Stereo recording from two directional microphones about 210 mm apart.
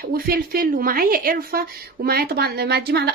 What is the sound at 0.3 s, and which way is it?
A woman's voice, 45° right (ahead or behind).